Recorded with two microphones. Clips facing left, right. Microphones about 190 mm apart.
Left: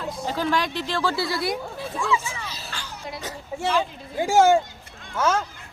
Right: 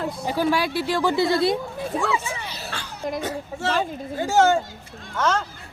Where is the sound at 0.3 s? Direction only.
10° right (ahead or behind).